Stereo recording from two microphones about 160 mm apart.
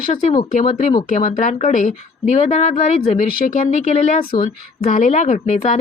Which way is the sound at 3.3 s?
60° left (ahead or behind).